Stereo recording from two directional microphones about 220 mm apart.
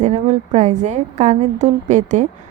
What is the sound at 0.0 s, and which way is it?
Speech, 30° right (ahead or behind).